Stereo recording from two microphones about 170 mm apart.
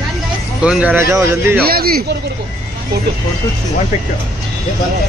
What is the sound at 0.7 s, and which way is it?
Speech, 5° right (ahead or behind).